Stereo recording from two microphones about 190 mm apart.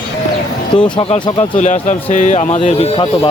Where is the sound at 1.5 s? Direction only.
40° left (ahead or behind).